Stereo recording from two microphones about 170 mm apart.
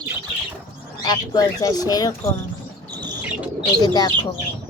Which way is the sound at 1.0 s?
20° left (ahead or behind).